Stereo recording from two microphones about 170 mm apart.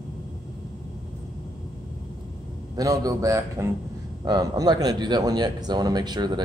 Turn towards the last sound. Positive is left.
turn(degrees=-25)  # may be behind; listen again after turning